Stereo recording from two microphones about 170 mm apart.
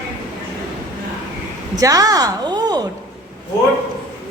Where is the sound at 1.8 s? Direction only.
20° right (ahead or behind).